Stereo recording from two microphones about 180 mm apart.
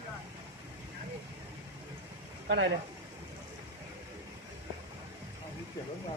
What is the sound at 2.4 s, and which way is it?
Speech, 90° right.